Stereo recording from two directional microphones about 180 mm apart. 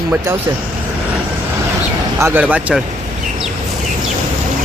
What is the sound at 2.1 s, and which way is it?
Speech, 15° right (ahead or behind).